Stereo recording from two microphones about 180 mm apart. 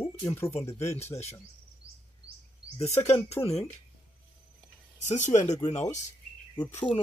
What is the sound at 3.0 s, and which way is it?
Speech, 35° left (ahead or behind).